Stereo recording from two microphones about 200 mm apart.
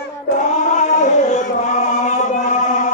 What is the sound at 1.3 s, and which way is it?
Chant, 35° left (ahead or behind).